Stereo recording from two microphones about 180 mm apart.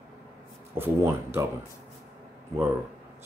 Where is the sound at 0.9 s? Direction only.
15° right (ahead or behind).